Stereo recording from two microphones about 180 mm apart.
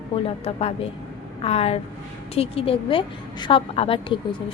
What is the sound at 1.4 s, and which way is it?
A woman's voice, 35° left (ahead or behind).